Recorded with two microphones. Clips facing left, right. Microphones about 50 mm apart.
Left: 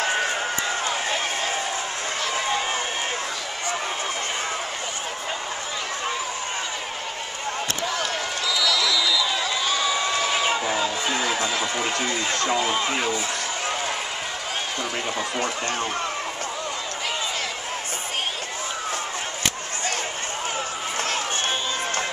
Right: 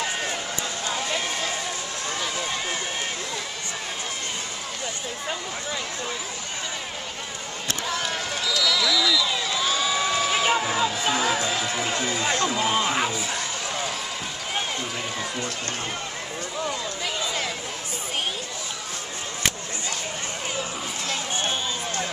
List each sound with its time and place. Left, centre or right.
0.0 s run: left
8.5 s run: centre
9.6 s music: centre
12.0 s run: centre
12.6 s a sound: centre